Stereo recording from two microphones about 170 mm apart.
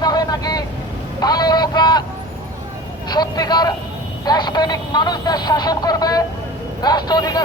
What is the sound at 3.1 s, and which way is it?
A man's voice, 25° left (ahead or behind).